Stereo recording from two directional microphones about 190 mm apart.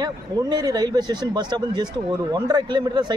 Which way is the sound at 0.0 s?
20° right (ahead or behind).